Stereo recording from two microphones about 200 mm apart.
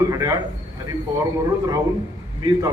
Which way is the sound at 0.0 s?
15° right (ahead or behind).